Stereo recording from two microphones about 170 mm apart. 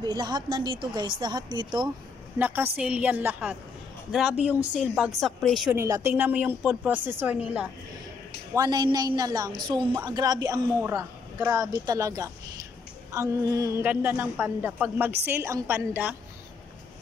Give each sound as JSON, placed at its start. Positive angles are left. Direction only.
{"t": 0.0, "sound": "a woman's voice", "side_deg": -25}
{"t": 2.3, "sound": "a woman's voice", "side_deg": -10}
{"t": 5.8, "sound": "a woman's voice", "side_deg": -15}
{"t": 8.5, "sound": "a woman's voice", "side_deg": -25}